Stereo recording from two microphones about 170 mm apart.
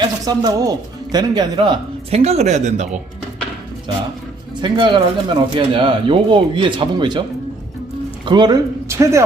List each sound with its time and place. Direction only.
0.3 s speech: 25° right (ahead or behind); by 3.0 s 45° right (ahead or behind)
4.6 s a man's voice: 30° right (ahead or behind)